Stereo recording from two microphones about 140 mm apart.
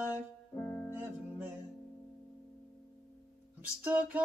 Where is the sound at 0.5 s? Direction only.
15° left (ahead or behind).